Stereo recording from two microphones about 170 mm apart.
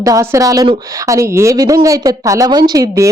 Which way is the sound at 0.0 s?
20° right (ahead or behind).